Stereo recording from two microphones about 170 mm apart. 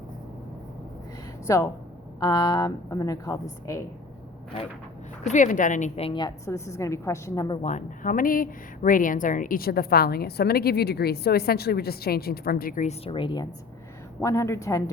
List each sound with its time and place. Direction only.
1.5 s a woman's voice: 20° left (ahead or behind)
5.2 s speech: 45° left (ahead or behind)
6.1 s a woman's voice: 25° left (ahead or behind)
7.6 s speech: 45° left (ahead or behind)
13.1 s a woman's voice: 30° left (ahead or behind)